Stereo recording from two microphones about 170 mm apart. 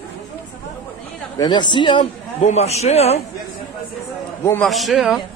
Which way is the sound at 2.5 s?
40° left (ahead or behind).